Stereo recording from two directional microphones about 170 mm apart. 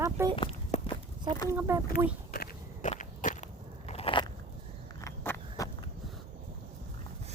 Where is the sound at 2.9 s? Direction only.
50° left (ahead or behind); by 4.3 s 30° left (ahead or behind).